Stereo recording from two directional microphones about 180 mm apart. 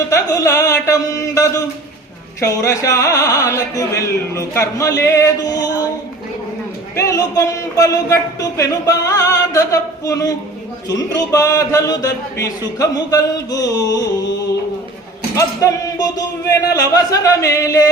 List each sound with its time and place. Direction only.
0.1 s a sound: 15° left (ahead or behind)
6.9 s a man's voice: 20° left (ahead or behind)
15.4 s a man's voice: 20° left (ahead or behind)